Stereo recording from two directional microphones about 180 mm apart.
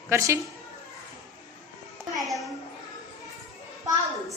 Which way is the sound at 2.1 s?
Centre (ahead or behind).